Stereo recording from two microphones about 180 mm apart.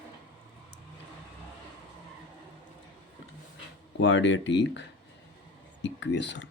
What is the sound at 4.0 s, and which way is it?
Speech, 90° left.